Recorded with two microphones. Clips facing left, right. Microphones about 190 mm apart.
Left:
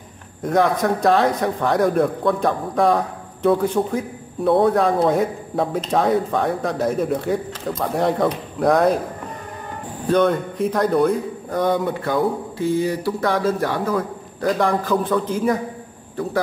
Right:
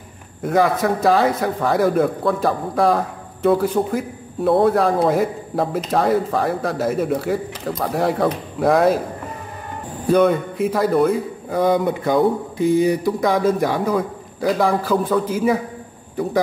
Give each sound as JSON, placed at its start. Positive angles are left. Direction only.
{"t": 0.4, "sound": "a man's voice", "side_deg": -5}
{"t": 10.0, "sound": "a man's voice", "side_deg": -10}